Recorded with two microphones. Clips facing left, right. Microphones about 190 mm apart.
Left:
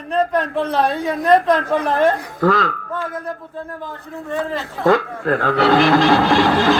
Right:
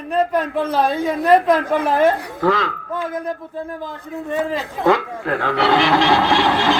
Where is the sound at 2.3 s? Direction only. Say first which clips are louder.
Left 2 dB; 45° left (ahead or behind).